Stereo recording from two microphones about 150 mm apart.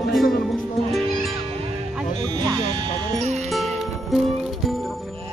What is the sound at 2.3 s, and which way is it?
Music, 30° right (ahead or behind).